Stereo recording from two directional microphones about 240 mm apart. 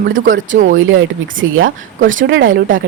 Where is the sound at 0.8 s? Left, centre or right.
Right.